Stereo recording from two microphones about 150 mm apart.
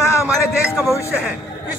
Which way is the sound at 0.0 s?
20° left (ahead or behind).